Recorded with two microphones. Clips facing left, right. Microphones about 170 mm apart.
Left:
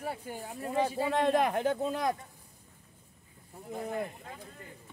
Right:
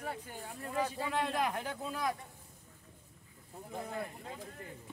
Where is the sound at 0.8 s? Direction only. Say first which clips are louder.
Left 6 dB; 30° left (ahead or behind).